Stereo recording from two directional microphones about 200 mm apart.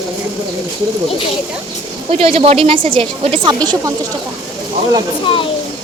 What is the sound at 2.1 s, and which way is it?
A woman's voice, 30° right (ahead or behind).